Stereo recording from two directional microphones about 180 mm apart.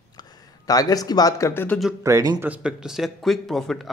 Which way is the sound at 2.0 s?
20° right (ahead or behind).